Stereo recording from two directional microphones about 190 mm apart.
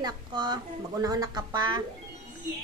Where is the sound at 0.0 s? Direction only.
20° right (ahead or behind).